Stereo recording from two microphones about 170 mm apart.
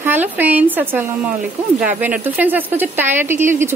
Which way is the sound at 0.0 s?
10° right (ahead or behind).